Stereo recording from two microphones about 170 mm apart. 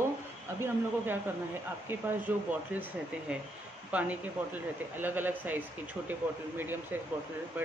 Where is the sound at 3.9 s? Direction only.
10° right (ahead or behind).